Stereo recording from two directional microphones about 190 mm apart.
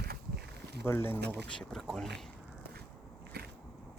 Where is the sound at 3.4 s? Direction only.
60° right (ahead or behind).